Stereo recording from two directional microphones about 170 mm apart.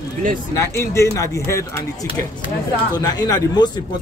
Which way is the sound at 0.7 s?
15° left (ahead or behind).